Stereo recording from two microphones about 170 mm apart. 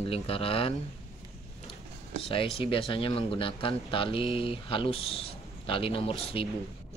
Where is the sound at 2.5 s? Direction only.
30° left (ahead or behind).